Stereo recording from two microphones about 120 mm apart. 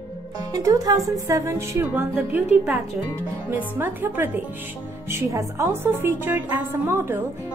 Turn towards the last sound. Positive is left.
turn(degrees=-20)  # may be behind; listen again after turning